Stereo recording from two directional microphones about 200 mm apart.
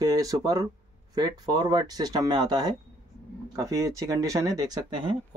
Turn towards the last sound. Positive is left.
turn(degrees=-20)  # may be behind; listen again after turning